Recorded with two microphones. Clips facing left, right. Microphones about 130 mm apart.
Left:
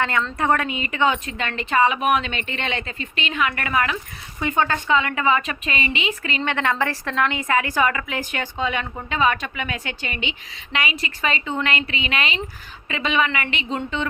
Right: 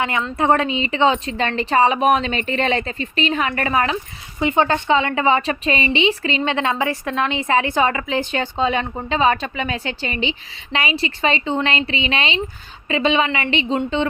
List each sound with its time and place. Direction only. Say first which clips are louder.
0.0 s a woman's voice: right 2 dB; 20° right (ahead or behind)